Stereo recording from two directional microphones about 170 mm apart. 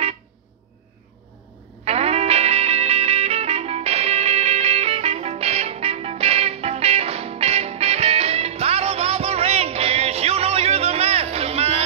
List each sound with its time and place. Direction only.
1.9 s music: 40° right (ahead or behind)